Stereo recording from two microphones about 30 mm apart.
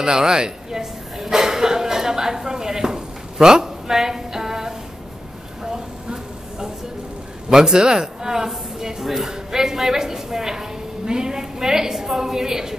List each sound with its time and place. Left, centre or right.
0.0 s speech: right
5.6 s a sound: right
7.4 s a woman's voice: right